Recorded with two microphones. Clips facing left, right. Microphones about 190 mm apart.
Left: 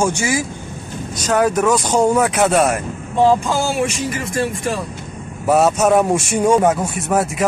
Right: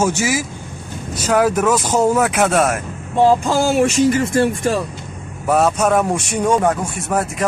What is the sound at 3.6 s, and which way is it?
Speech, 55° right (ahead or behind).